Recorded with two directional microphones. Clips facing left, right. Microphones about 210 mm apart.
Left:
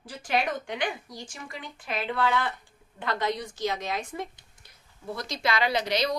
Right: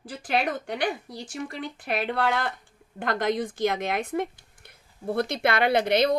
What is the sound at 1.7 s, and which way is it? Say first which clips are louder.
Speech: right 2 dB; 60° right (ahead or behind).